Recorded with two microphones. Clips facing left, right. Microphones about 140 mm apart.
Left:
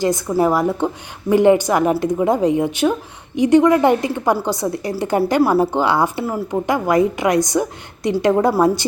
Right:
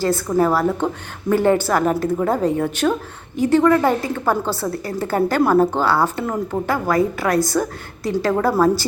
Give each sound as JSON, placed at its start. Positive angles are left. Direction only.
{"t": 0.0, "sound": "a woman's voice", "side_deg": 15}